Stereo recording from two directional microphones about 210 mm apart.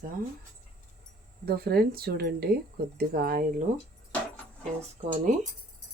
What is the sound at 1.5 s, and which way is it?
Speech, 45° right (ahead or behind).